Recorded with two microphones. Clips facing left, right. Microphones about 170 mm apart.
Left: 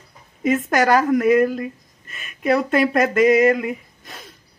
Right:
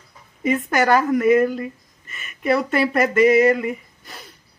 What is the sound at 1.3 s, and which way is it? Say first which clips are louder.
Speech: right 1 dB; 20° right (ahead or behind).